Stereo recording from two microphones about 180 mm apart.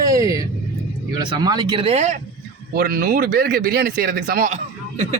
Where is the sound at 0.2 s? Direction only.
20° right (ahead or behind); by 2.1 s 35° right (ahead or behind).